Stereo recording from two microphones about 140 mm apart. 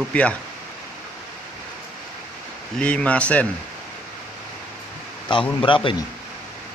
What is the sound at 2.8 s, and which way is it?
Speech, 10° left (ahead or behind).